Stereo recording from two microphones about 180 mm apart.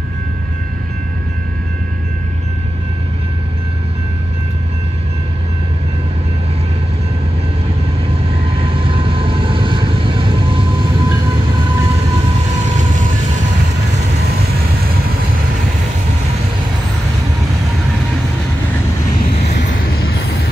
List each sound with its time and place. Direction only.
8.5 s vehicle: 30° right (ahead or behind)